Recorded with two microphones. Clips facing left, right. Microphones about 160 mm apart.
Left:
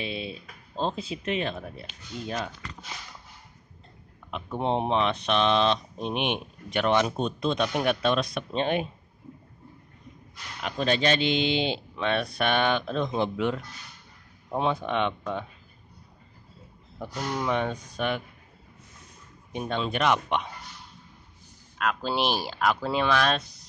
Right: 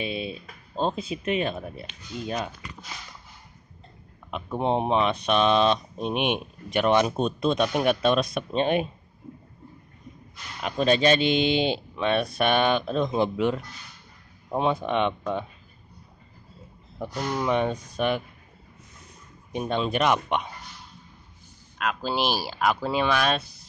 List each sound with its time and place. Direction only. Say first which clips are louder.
0.0 s speech: right 3 dB; 15° right (ahead or behind)
4.6 s speech: right 2 dB; 5° right (ahead or behind)
11.1 s speech: right 3 dB; 15° right (ahead or behind)
17.0 s speech: right 2 dB; 15° right (ahead or behind)
19.5 s speech: right 3 dB; 15° right (ahead or behind)
21.7 s speech: even; 5° right (ahead or behind)